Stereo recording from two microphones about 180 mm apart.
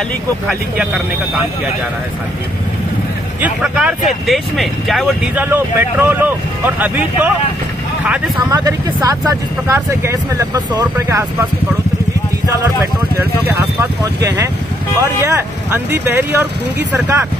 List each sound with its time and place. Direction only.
3.3 s speech: 5° right (ahead or behind)
5.4 s speech: 10° right (ahead or behind)
8.1 s speech: 20° right (ahead or behind)
13.2 s speech: 10° right (ahead or behind)